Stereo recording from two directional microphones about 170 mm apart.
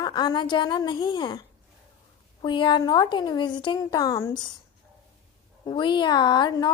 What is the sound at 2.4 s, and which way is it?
A woman's voice, 30° left (ahead or behind).